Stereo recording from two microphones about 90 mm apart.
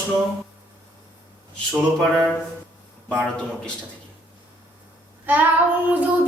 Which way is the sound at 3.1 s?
10° left (ahead or behind).